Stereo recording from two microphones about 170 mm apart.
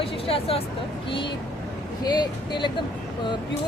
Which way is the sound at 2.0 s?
25° left (ahead or behind).